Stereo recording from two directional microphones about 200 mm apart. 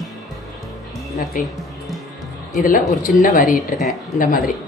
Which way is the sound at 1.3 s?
40° left (ahead or behind).